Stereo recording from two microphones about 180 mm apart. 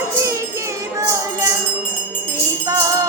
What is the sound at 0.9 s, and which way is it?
Music, 15° right (ahead or behind).